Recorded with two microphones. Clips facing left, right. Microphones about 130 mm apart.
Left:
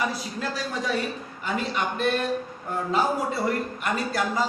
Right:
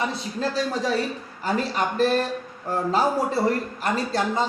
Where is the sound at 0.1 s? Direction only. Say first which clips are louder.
Right 4 dB; 30° right (ahead or behind).